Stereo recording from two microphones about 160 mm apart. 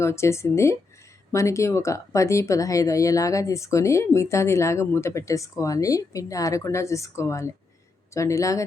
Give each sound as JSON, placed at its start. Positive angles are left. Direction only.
{"t": 0.0, "sound": "speech", "side_deg": 15}